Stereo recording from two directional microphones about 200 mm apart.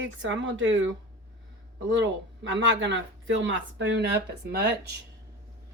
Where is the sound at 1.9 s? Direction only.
65° right (ahead or behind).